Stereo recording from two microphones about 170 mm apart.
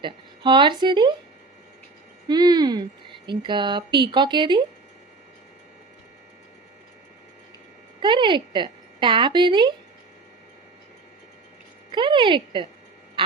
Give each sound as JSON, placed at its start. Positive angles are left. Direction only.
{"t": 0.0, "sound": "speech", "side_deg": -25}
{"t": 2.2, "sound": "a woman's voice", "side_deg": -25}
{"t": 8.0, "sound": "a woman's voice", "side_deg": -30}
{"t": 11.9, "sound": "speech", "side_deg": -30}
{"t": 13.2, "sound": "quack", "side_deg": -30}